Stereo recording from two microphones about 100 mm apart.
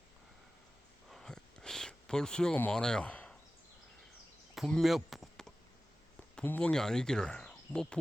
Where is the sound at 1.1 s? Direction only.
5° left (ahead or behind).